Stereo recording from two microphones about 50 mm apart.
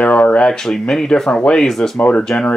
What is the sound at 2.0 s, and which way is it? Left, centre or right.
Speech, left.